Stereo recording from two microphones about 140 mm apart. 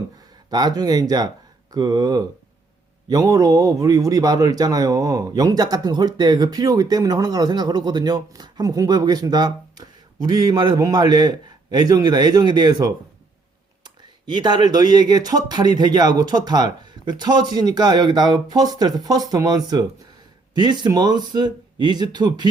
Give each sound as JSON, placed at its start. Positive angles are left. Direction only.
{"t": 0.5, "sound": "speech", "side_deg": -30}
{"t": 14.3, "sound": "speech", "side_deg": -30}